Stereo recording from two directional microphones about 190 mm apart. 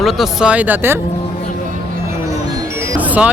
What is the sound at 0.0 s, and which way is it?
Speech, centre (ahead or behind).